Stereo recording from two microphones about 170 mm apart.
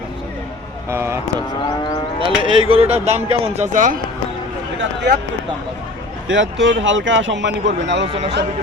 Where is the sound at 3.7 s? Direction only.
50° right (ahead or behind).